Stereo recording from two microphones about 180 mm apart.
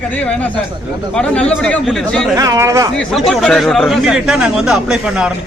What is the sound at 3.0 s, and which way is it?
A man's voice, centre (ahead or behind).